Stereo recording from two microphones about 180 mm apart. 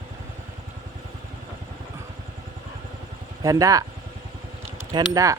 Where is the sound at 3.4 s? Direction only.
20° right (ahead or behind).